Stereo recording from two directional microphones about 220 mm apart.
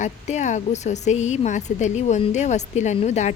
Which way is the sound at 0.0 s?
30° left (ahead or behind).